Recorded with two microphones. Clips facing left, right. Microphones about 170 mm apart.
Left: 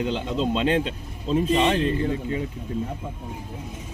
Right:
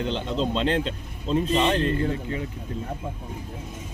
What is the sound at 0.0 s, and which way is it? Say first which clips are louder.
Speech: left 1 dB; 5° left (ahead or behind).